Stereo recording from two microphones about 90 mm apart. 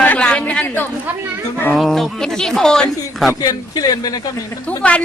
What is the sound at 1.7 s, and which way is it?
Speech, centre (ahead or behind).